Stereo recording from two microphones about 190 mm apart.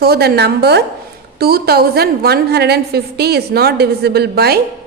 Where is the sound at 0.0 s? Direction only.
55° right (ahead or behind).